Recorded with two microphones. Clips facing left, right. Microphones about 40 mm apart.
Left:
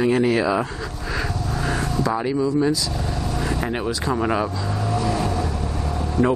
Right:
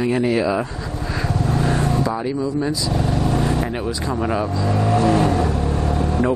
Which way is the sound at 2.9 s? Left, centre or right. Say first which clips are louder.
Right 6 dB; right.